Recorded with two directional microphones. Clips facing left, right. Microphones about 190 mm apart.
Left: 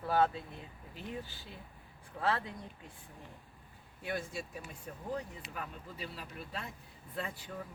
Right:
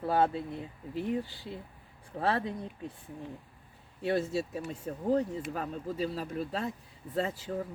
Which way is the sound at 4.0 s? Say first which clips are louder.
Right 9 dB; 25° right (ahead or behind).